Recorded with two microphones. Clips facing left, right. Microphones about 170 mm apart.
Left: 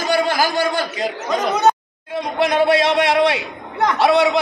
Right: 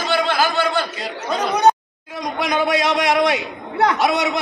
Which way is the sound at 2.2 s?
30° left (ahead or behind).